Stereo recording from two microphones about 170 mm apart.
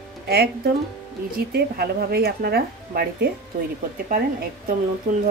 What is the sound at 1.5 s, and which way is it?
A woman's voice, 65° right (ahead or behind).